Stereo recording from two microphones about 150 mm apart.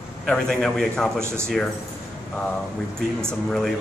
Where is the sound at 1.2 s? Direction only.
15° right (ahead or behind).